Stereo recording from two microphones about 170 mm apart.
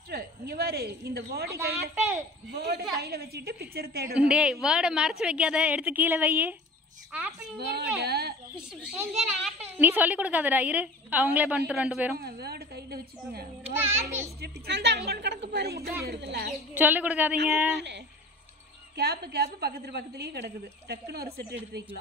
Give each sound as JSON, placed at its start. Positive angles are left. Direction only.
{"t": 0.1, "sound": "speech", "side_deg": -65}
{"t": 1.6, "sound": "a woman's voice", "side_deg": -15}
{"t": 2.5, "sound": "a woman's voice", "side_deg": -65}
{"t": 4.2, "sound": "a woman's voice", "side_deg": -5}
{"t": 7.5, "sound": "a woman's voice", "side_deg": -70}
{"t": 9.8, "sound": "a woman's voice", "side_deg": -10}
{"t": 12.2, "sound": "a woman's voice", "side_deg": -65}
{"t": 13.7, "sound": "a woman's voice", "side_deg": -15}
{"t": 14.4, "sound": "a woman's voice", "side_deg": -80}
{"t": 16.7, "sound": "a woman's voice", "side_deg": -10}
{"t": 18.9, "sound": "a woman's voice", "side_deg": -70}